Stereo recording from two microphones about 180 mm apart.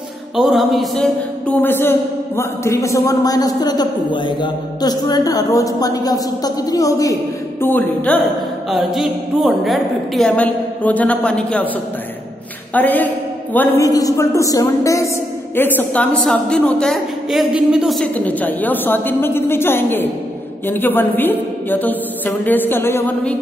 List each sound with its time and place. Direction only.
0.4 s a woman's voice: centre (ahead or behind)
8.6 s a woman's voice: centre (ahead or behind)
12.7 s a woman's voice: 10° left (ahead or behind)